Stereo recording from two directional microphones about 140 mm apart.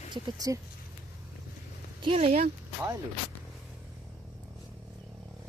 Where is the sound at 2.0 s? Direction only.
40° right (ahead or behind).